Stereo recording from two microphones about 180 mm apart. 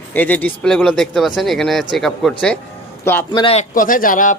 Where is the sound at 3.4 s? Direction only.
35° left (ahead or behind).